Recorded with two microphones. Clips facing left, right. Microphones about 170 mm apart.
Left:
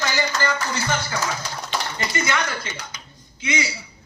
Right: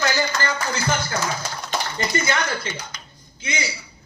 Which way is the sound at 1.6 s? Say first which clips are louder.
Right 2 dB; 40° right (ahead or behind).